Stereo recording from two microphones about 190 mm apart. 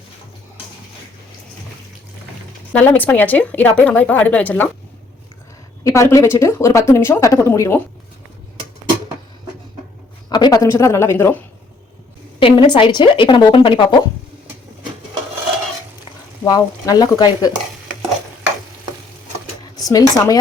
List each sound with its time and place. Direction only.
2.7 s speech: 10° left (ahead or behind)
5.8 s speech: 15° left (ahead or behind)
10.2 s speech: 20° left (ahead or behind)
12.4 s speech: 25° left (ahead or behind)
16.4 s speech: 20° left (ahead or behind)
19.7 s speech: 20° left (ahead or behind)